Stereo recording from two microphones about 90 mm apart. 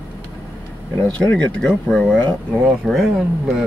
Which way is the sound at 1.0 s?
15° left (ahead or behind).